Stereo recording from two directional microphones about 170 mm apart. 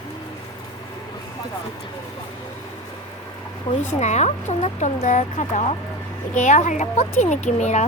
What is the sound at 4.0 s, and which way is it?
Speech, 40° left (ahead or behind).